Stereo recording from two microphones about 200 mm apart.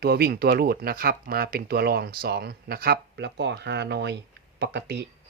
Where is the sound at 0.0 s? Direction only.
50° right (ahead or behind).